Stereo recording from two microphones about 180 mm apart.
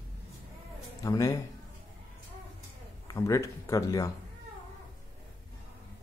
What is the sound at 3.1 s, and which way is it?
Speech, 20° left (ahead or behind).